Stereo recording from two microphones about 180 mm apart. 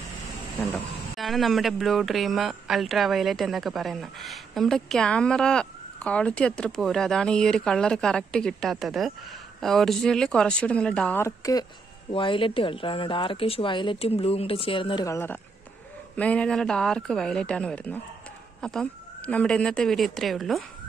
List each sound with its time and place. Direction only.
1.1 s speech: centre (ahead or behind); by 11.6 s 15° left (ahead or behind)
12.1 s speech: 30° left (ahead or behind)
15.0 s speech: 15° left (ahead or behind)